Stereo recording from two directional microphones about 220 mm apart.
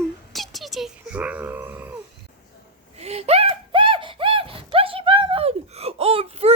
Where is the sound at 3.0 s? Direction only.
30° right (ahead or behind).